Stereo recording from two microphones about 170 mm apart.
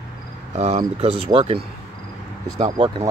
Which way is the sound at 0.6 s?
40° right (ahead or behind).